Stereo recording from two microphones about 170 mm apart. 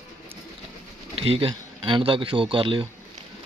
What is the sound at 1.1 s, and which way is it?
Speech, 35° right (ahead or behind).